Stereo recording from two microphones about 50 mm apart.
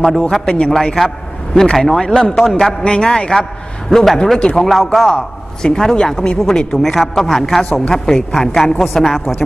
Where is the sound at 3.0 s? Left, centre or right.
Centre.